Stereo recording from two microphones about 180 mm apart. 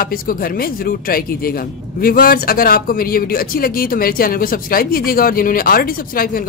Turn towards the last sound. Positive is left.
turn(degrees=55)  # may be behind; listen again after turning